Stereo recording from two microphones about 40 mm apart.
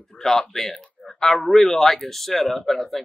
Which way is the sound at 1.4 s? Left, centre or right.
Centre.